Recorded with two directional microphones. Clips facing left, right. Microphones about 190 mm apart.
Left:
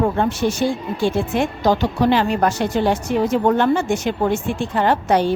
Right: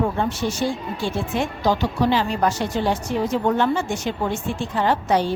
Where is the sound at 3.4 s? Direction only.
50° left (ahead or behind).